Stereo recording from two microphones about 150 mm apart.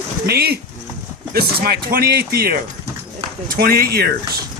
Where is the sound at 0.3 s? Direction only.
90° right.